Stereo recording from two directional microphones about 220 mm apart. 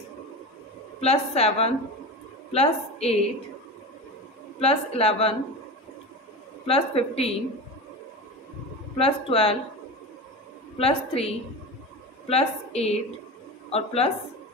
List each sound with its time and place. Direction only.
1.0 s speech: 25° left (ahead or behind)
4.6 s speech: 25° left (ahead or behind)
6.6 s speech: 25° left (ahead or behind)
8.9 s speech: 25° left (ahead or behind)
10.8 s speech: 25° left (ahead or behind)